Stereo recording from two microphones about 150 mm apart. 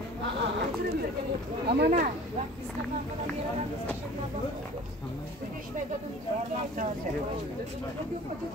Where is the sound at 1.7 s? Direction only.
90° right.